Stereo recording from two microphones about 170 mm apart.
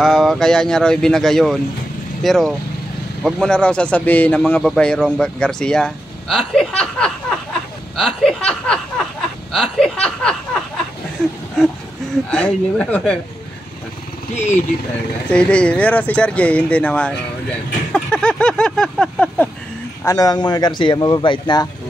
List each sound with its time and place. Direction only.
0.0 s a man's voice: centre (ahead or behind)
12.3 s a man's voice: 5° left (ahead or behind)
14.3 s speech: 40° left (ahead or behind)
15.3 s speech: 5° left (ahead or behind)
17.9 s a sound: 5° left (ahead or behind)
20.1 s speech: 20° left (ahead or behind)